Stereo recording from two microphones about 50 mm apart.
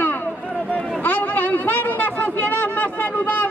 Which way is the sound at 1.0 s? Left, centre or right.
Left.